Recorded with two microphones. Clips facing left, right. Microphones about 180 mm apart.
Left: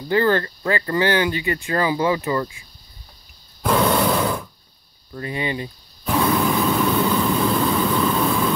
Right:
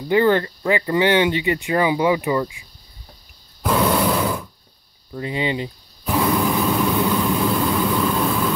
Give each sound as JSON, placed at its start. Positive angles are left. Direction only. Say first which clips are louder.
{"t": 0.1, "sound": "speech", "louder": "right 2 dB", "side_deg": -15}
{"t": 3.6, "sound": "a sound", "louder": "even", "side_deg": -5}
{"t": 5.1, "sound": "speech", "louder": "right 2 dB", "side_deg": -20}
{"t": 6.0, "sound": "vehicle", "louder": "even", "side_deg": -10}